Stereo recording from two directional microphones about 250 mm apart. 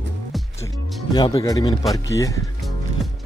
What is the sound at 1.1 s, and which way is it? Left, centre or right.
Speech, centre.